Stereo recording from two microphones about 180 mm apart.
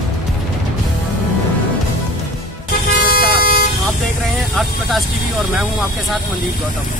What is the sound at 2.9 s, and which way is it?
Vehicle, 55° left (ahead or behind).